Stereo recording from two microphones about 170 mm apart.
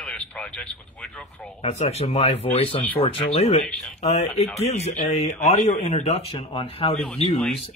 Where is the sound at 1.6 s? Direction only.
35° left (ahead or behind).